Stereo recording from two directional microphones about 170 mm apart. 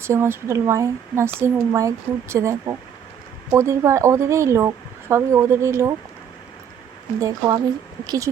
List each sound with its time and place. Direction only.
0.0 s speech: 15° right (ahead or behind)
7.2 s speech: 20° right (ahead or behind)